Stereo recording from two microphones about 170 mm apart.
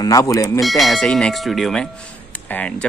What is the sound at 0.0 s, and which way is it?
Speech, 20° left (ahead or behind).